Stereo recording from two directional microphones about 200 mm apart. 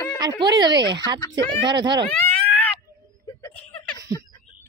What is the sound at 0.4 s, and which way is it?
Speech, 25° right (ahead or behind).